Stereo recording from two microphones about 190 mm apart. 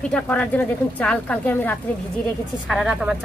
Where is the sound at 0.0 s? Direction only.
5° left (ahead or behind).